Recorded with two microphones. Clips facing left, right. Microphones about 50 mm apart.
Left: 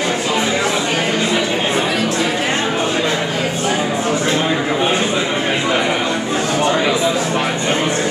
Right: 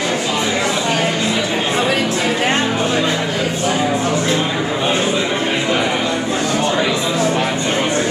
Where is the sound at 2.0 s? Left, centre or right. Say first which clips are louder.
Even; centre.